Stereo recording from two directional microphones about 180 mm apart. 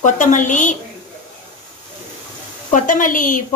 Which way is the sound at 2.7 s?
45° left (ahead or behind).